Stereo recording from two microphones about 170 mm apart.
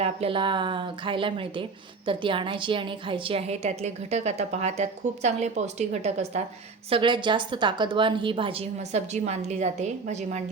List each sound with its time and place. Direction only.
0.0 s a woman's voice: 35° right (ahead or behind)
6.9 s a woman's voice: 30° right (ahead or behind)